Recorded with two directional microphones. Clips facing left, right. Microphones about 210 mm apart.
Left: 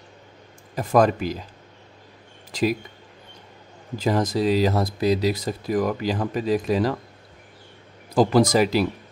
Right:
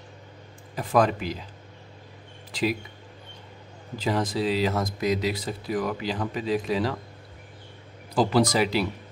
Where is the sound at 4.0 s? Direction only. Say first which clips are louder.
Left 4 dB; 45° left (ahead or behind).